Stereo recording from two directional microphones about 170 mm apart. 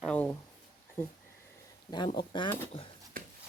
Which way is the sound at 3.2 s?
55° right (ahead or behind).